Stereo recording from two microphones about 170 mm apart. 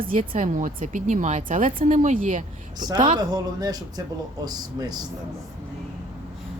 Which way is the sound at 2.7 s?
25° right (ahead or behind).